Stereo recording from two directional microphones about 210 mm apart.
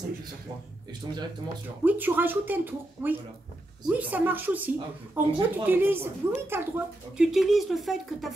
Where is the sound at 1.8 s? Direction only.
10° right (ahead or behind).